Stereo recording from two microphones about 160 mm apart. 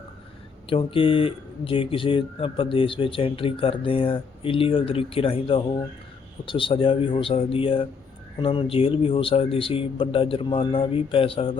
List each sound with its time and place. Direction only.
0.7 s speech: 35° left (ahead or behind)